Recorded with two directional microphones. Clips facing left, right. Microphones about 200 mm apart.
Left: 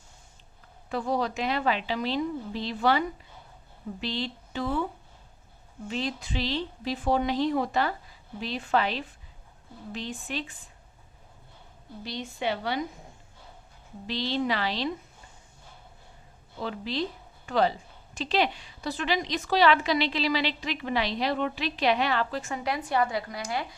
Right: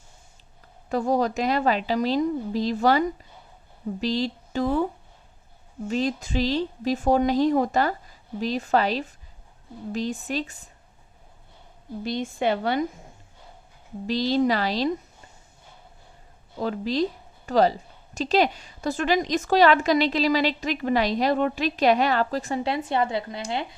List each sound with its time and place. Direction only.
0.9 s a woman's voice: 45° right (ahead or behind)
4.0 s a woman's voice: 40° right (ahead or behind)
5.9 s a woman's voice: 45° right (ahead or behind)
12.0 s a woman's voice: 50° right (ahead or behind)
14.1 s a woman's voice: 40° right (ahead or behind)
16.6 s a woman's voice: 40° right (ahead or behind); by 23.6 s 25° right (ahead or behind)